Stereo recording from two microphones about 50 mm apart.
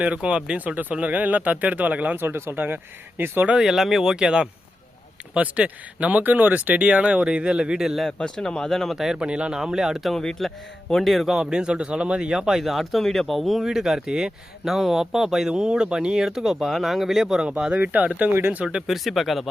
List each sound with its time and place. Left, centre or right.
0.0 s speech: right
2.1 s speech: right
3.6 s speech: centre
5.3 s speech: right
6.8 s speech: right
8.2 s speech: centre
9.0 s speech: centre
9.2 s speech: centre
10.1 s speech: centre
11.3 s speech: centre
17.6 s speech: right
18.3 s speech: right
18.6 s speech: centre